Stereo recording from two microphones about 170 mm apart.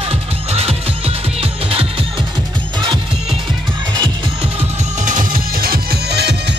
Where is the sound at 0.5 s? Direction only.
40° right (ahead or behind).